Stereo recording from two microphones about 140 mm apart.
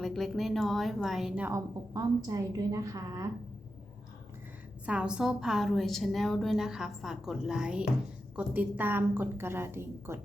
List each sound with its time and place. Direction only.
0.0 s a woman's voice: centre (ahead or behind)
1.5 s a woman's voice: 25° right (ahead or behind)
4.9 s a woman's voice: 5° right (ahead or behind)